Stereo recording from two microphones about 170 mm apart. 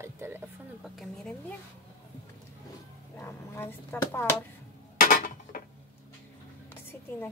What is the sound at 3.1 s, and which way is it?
A woman's voice, 15° left (ahead or behind).